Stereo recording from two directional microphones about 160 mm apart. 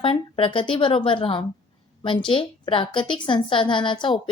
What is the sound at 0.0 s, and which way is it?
Speech, 35° left (ahead or behind).